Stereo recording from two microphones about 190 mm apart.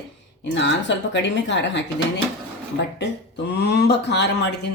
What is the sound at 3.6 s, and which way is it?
Speech, 60° left (ahead or behind).